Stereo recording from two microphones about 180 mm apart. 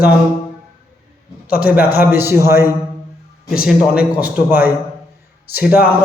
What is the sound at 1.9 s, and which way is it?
A man's voice, 10° right (ahead or behind).